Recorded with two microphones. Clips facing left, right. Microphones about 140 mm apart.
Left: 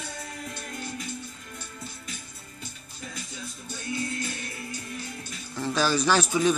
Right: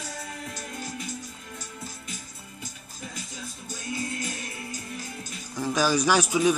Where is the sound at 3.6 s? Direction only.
40° right (ahead or behind).